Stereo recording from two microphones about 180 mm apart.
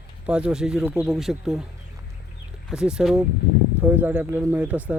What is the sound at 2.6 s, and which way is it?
Speech, 5° right (ahead or behind).